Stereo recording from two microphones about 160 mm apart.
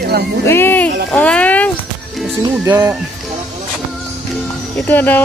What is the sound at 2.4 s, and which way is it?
Speech, 20° right (ahead or behind).